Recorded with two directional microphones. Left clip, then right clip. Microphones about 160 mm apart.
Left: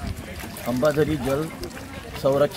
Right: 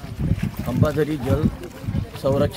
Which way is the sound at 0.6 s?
10° right (ahead or behind).